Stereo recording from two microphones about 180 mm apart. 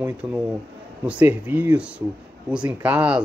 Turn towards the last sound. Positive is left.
turn(degrees=-5)  # may be behind; listen again after turning